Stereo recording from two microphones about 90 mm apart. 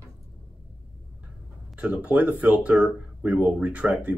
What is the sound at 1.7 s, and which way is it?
Speech, 15° right (ahead or behind).